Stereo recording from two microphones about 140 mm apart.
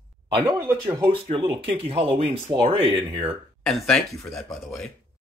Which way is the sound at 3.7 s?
5° left (ahead or behind).